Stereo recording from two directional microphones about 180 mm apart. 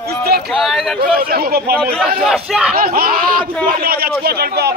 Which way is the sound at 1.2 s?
60° right (ahead or behind).